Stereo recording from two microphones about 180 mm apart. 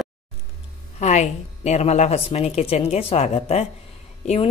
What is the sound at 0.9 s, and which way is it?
Speech, 40° left (ahead or behind).